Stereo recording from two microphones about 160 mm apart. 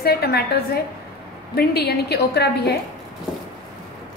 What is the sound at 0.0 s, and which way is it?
A woman's voice, 80° left.